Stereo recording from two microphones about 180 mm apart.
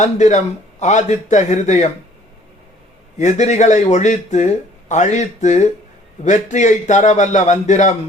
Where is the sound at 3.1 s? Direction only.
40° left (ahead or behind).